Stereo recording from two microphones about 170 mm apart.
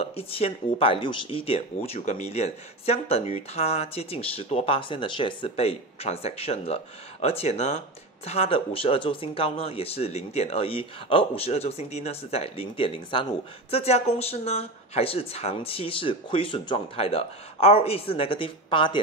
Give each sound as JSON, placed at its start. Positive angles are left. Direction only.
{"t": 0.0, "sound": "speech", "side_deg": 35}